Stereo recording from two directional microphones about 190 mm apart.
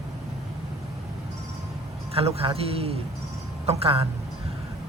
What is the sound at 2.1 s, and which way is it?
A man's voice, 30° right (ahead or behind).